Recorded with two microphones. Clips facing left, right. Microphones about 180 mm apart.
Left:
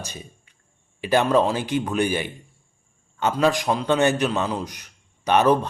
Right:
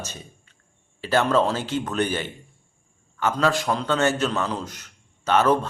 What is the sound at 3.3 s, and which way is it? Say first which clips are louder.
A man's voice: left 2 dB; 15° left (ahead or behind).